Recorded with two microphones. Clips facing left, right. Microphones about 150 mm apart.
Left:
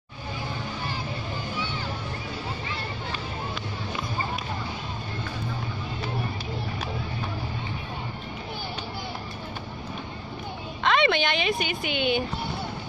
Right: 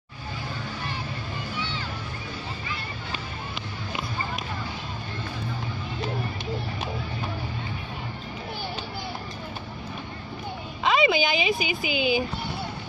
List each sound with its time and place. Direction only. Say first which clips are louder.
10.8 s speech: right 1 dB; centre (ahead or behind)